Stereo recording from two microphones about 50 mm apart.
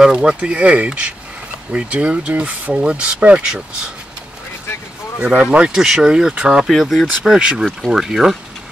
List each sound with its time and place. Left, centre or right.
0.0 s speech: centre
5.2 s speech: right
5.7 s speech: centre
6.6 s speech: centre